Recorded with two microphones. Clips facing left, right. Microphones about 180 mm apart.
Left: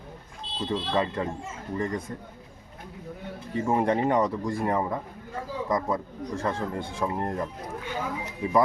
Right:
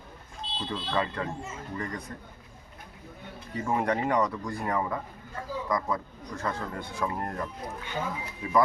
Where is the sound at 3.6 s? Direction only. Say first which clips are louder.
Left 4 dB; 25° left (ahead or behind).